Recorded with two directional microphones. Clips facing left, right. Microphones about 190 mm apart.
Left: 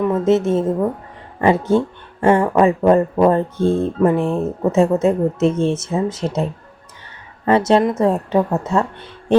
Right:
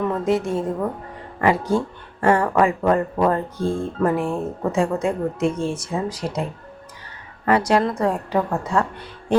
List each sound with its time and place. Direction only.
0.3 s speech: 25° left (ahead or behind)
7.4 s speech: 25° left (ahead or behind)